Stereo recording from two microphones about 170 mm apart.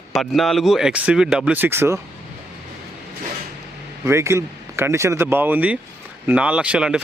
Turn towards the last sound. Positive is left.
turn(degrees=-5)  # may be behind; listen again after turning